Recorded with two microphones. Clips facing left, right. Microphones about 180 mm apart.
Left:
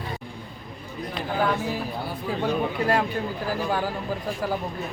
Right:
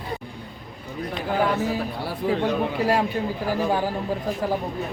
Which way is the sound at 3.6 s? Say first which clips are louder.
Right 3 dB; 25° right (ahead or behind).